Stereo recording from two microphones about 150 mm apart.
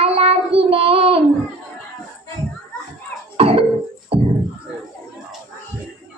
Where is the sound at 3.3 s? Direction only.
40° right (ahead or behind).